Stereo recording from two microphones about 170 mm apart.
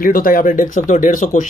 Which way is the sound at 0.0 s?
55° left (ahead or behind).